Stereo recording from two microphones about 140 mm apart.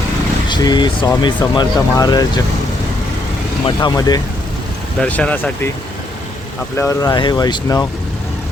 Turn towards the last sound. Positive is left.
turn(degrees=25)  # may be behind; listen again after turning